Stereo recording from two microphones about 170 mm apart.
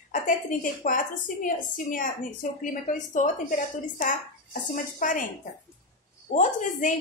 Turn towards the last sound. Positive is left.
turn(degrees=50)  # may be behind; listen again after turning